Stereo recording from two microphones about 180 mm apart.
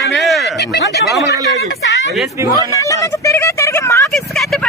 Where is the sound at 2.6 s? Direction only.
20° left (ahead or behind).